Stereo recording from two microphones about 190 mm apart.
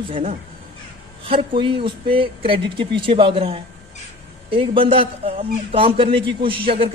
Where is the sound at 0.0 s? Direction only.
30° right (ahead or behind).